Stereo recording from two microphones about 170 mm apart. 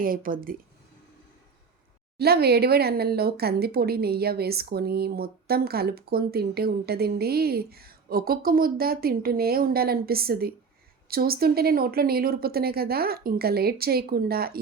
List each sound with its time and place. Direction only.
0.0 s speech: 55° right (ahead or behind)
2.1 s speech: 70° right (ahead or behind)